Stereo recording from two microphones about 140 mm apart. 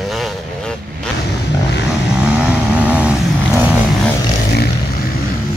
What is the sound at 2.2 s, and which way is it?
Vehicle, 10° right (ahead or behind).